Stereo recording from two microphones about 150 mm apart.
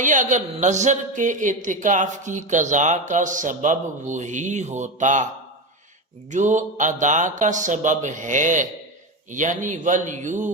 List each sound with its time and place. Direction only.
0.0 s speech: 55° right (ahead or behind)
6.3 s speech: 55° right (ahead or behind)